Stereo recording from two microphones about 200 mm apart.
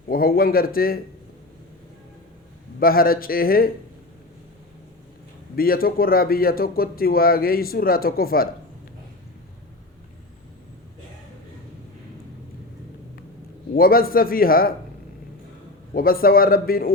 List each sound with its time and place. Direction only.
0.1 s speech: 45° left (ahead or behind)
2.8 s speech: 45° left (ahead or behind)
5.5 s speech: 45° left (ahead or behind)
13.7 s speech: 45° left (ahead or behind)
16.0 s speech: 45° left (ahead or behind)